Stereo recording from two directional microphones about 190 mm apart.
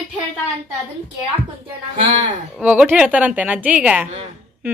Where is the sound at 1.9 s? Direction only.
40° right (ahead or behind).